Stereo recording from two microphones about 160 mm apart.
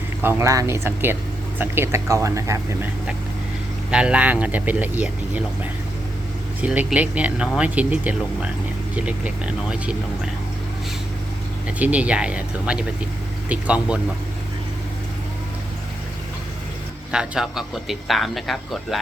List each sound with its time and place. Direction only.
0.2 s speech: 15° right (ahead or behind)
3.9 s speech: 5° right (ahead or behind)
6.6 s speech: 10° right (ahead or behind)
11.8 s speech: 10° right (ahead or behind)
17.1 s speech: 5° right (ahead or behind)